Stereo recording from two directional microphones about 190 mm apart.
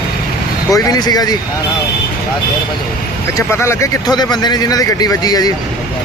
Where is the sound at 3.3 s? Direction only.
15° left (ahead or behind).